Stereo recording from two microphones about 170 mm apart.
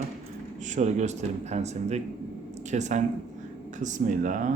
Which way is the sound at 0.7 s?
45° right (ahead or behind).